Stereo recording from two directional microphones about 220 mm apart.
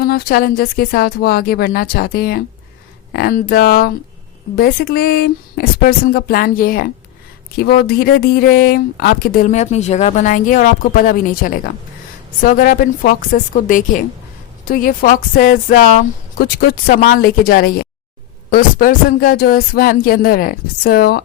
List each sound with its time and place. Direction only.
0.0 s speech: 45° left (ahead or behind)
7.9 s speech: 45° left (ahead or behind)